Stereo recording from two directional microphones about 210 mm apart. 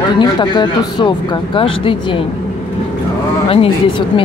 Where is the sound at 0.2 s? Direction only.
20° left (ahead or behind).